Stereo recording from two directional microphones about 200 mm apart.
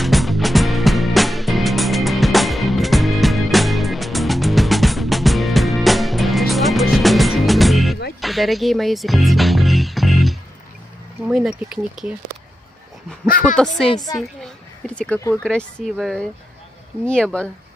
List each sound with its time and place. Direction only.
0.0 s music: centre (ahead or behind)
11.2 s speech: 5° right (ahead or behind)
13.8 s a woman's voice: 20° left (ahead or behind)